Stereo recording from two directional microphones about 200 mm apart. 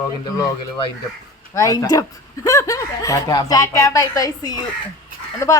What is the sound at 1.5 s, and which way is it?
A woman's voice, 15° left (ahead or behind).